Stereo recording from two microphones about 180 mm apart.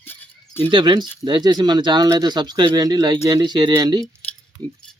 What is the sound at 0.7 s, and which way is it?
Speech, 25° right (ahead or behind).